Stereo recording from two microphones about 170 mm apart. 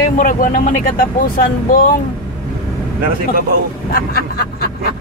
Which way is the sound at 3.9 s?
65° left (ahead or behind).